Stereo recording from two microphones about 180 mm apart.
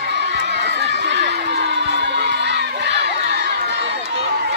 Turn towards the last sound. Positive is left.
turn(degrees=-70)  # may be behind; listen again after turning